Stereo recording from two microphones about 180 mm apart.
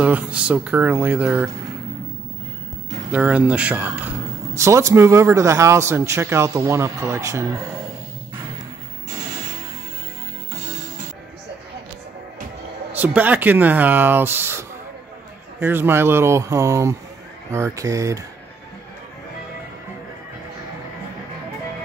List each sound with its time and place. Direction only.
0.0 s a man's voice: 5° right (ahead or behind)
3.1 s a man's voice: 10° right (ahead or behind)
12.9 s a man's voice: 10° right (ahead or behind)